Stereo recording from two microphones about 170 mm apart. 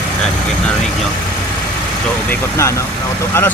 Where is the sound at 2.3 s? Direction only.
15° left (ahead or behind).